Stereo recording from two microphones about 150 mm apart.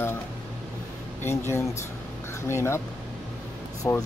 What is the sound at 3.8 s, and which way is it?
Speech, 25° left (ahead or behind).